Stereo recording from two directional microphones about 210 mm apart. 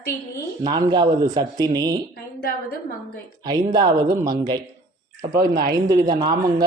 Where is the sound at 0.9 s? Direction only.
20° right (ahead or behind).